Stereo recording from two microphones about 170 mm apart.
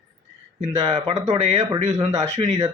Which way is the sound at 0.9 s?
40° right (ahead or behind).